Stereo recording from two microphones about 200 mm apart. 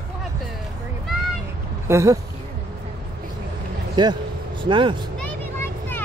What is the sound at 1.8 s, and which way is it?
Speech, 15° right (ahead or behind).